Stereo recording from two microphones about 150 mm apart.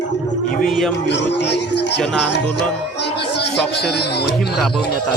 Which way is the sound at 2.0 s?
5° left (ahead or behind).